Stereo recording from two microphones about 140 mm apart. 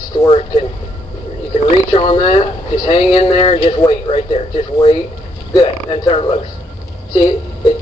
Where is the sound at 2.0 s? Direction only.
45° left (ahead or behind).